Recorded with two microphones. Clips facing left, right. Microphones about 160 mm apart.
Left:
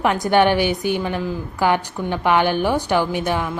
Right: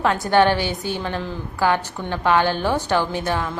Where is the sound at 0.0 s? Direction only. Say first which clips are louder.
Left 1 dB; 15° left (ahead or behind).